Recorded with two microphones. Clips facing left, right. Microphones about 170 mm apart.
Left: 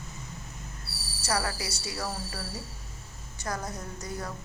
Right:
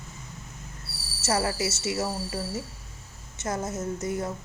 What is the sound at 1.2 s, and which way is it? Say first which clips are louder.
A woman's voice: right 5 dB; 25° right (ahead or behind).